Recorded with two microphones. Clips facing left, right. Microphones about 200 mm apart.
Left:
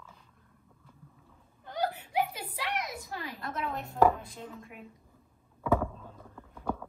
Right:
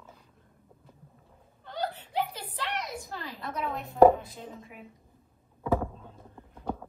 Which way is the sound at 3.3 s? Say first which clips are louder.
Right 2 dB; centre (ahead or behind).